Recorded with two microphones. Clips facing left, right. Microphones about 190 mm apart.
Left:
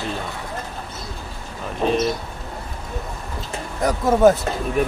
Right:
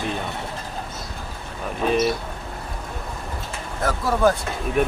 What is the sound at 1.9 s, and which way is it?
Speech, 5° right (ahead or behind).